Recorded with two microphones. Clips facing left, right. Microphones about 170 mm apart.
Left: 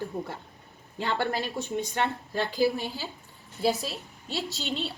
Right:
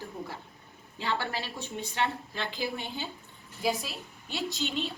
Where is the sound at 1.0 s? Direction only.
50° left (ahead or behind).